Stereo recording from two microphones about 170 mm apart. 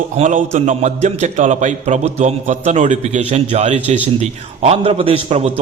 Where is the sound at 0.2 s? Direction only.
45° right (ahead or behind).